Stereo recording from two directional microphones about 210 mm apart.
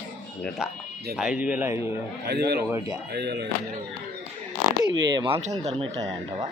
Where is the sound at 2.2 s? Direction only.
50° right (ahead or behind).